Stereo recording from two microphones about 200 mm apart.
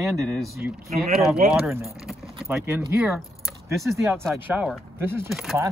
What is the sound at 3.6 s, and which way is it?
Speech, 15° right (ahead or behind).